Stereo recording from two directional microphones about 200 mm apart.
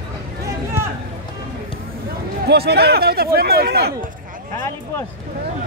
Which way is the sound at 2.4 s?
55° right (ahead or behind).